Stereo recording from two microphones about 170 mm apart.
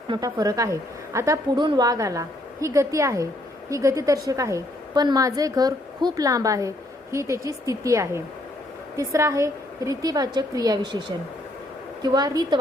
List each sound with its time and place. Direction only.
0.1 s a woman's voice: 20° right (ahead or behind)
12.0 s a woman's voice: 25° right (ahead or behind)